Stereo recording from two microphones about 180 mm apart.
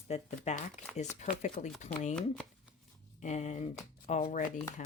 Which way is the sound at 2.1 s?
5° left (ahead or behind).